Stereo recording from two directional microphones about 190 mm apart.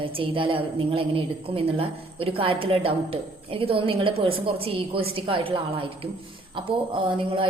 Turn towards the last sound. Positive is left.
turn(degrees=-25)  # may be behind; listen again after turning